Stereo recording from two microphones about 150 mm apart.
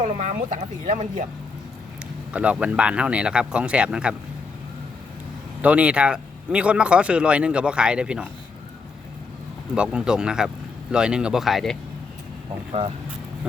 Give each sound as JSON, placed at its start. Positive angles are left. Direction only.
{"t": 0.0, "sound": "speech", "side_deg": -60}
{"t": 2.3, "sound": "speech", "side_deg": -10}
{"t": 5.6, "sound": "speech", "side_deg": -10}
{"t": 9.7, "sound": "speech", "side_deg": -5}